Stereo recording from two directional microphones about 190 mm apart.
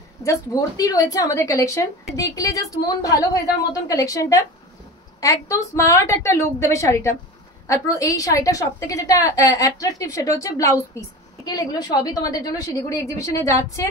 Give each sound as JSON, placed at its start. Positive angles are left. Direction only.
{"t": 0.2, "sound": "a woman's voice", "side_deg": 15}